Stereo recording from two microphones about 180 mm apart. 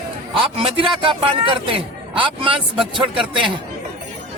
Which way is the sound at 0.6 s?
30° right (ahead or behind).